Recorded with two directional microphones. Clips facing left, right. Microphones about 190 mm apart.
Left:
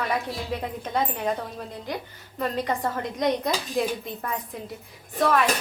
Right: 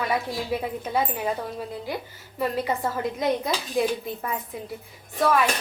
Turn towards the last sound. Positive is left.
turn(degrees=0)  # may be behind; listen again after turning